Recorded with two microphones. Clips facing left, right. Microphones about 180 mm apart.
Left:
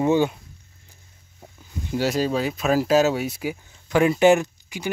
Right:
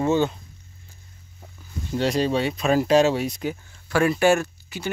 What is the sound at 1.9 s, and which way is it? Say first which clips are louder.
Speech: even; 5° left (ahead or behind).